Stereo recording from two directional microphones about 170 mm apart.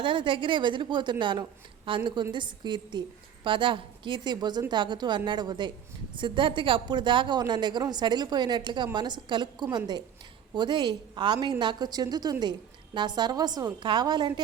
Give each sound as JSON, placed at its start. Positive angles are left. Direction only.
{"t": 0.0, "sound": "a woman's voice", "side_deg": -30}